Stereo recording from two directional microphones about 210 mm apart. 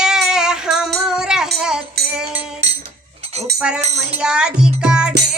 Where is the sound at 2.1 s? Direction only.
5° right (ahead or behind).